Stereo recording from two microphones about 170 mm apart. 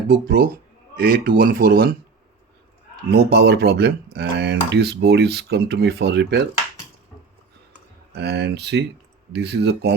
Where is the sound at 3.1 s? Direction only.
75° right (ahead or behind).